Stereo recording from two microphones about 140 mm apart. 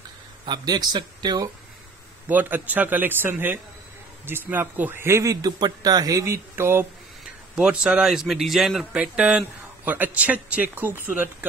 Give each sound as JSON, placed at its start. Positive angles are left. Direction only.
{"t": 0.5, "sound": "speech", "side_deg": -30}
{"t": 2.2, "sound": "speech", "side_deg": -10}
{"t": 7.5, "sound": "a man's voice", "side_deg": -5}